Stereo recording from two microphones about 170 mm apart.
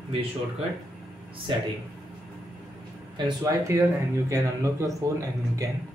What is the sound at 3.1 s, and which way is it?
Speech, 20° right (ahead or behind).